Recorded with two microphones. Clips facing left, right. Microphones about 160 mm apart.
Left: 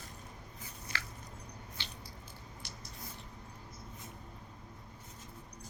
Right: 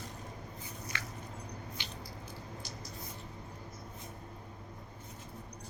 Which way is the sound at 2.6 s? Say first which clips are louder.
Right 4 dB; 70° left (ahead or behind).